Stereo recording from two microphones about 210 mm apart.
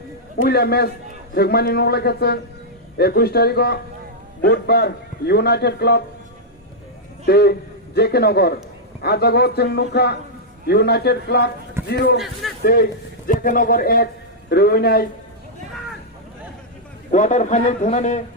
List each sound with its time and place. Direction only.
0.4 s a man's voice: 50° left (ahead or behind)
7.3 s a man's voice: 50° left (ahead or behind)
12.1 s a man's voice: centre (ahead or behind)
12.6 s a man's voice: 45° left (ahead or behind)
17.1 s a man's voice: 35° left (ahead or behind)